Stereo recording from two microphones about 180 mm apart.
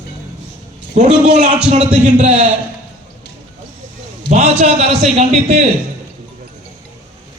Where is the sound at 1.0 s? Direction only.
40° right (ahead or behind).